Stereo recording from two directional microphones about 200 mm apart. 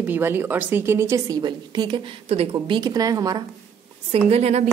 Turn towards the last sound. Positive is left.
turn(degrees=-30)  # may be behind; listen again after turning